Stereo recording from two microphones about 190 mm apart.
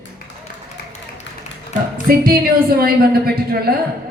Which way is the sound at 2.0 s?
50° right (ahead or behind).